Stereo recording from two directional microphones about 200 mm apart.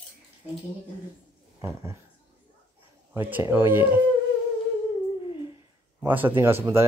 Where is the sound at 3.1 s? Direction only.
10° right (ahead or behind).